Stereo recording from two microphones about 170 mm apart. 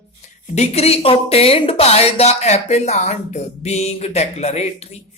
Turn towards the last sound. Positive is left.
turn(degrees=40)  # may be behind; listen again after turning